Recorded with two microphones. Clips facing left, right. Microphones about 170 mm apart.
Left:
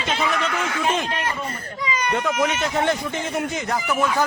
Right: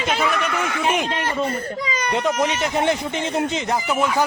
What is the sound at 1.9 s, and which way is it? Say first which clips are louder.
Baby cry: left 4 dB; 35° right (ahead or behind).